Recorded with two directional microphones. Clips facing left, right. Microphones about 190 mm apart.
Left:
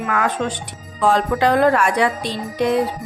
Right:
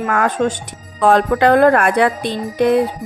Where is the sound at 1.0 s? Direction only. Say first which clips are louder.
Right 4 dB; 60° right (ahead or behind).